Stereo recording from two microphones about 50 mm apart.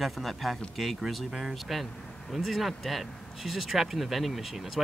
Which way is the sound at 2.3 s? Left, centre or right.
Centre.